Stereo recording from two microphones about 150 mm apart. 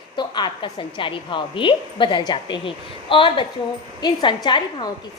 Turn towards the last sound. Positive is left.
turn(degrees=30)  # may be behind; listen again after turning